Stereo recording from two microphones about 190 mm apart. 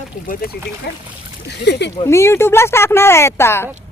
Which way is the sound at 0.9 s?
60° left (ahead or behind).